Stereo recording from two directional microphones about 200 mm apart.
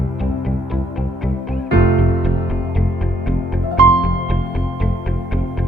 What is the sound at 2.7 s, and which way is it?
Music, centre (ahead or behind).